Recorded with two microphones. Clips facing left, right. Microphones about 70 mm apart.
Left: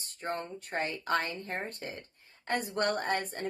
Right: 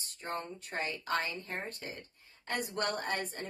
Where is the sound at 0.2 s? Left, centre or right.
Left.